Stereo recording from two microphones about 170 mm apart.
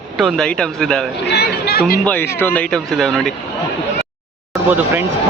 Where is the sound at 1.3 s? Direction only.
70° left (ahead or behind).